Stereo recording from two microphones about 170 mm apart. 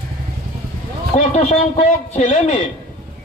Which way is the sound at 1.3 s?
45° left (ahead or behind).